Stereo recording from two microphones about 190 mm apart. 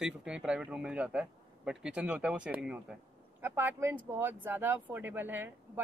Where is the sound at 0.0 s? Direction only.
5° right (ahead or behind).